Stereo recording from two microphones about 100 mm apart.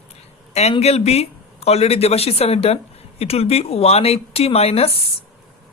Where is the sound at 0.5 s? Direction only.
90° left.